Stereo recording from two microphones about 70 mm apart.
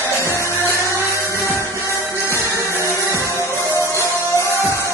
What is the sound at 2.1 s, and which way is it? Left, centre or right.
Music, left.